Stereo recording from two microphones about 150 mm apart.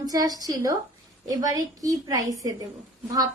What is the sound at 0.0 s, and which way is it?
A woman's voice, 25° right (ahead or behind).